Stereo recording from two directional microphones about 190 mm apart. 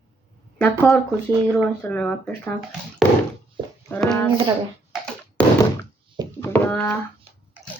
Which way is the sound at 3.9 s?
5° left (ahead or behind).